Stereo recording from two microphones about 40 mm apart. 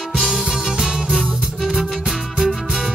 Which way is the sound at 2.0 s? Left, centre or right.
Centre.